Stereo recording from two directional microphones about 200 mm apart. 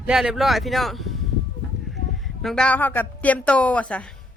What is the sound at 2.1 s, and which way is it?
Speech, centre (ahead or behind).